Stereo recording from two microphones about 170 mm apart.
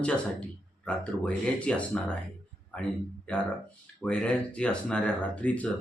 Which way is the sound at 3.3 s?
5° left (ahead or behind).